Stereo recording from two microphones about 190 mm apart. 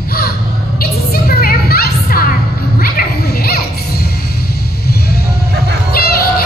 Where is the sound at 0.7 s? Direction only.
50° left (ahead or behind).